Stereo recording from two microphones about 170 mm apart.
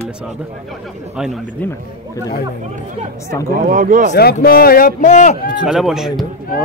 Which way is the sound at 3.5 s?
55° right (ahead or behind).